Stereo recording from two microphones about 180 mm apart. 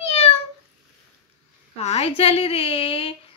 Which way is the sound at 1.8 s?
35° left (ahead or behind).